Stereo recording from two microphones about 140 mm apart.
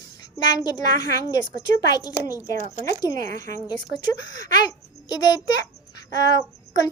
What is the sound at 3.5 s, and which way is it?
A child's voice, 30° left (ahead or behind).